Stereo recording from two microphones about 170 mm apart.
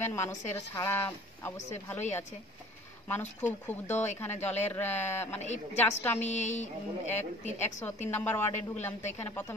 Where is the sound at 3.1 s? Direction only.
10° left (ahead or behind).